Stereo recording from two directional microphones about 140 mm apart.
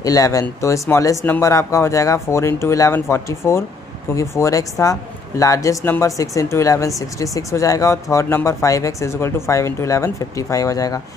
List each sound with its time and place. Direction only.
0.0 s speech: 25° left (ahead or behind)